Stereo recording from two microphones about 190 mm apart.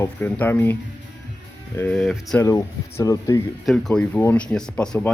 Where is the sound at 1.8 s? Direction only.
5° left (ahead or behind).